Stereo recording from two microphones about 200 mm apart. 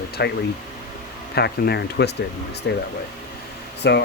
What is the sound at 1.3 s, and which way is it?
Speech, 55° left (ahead or behind).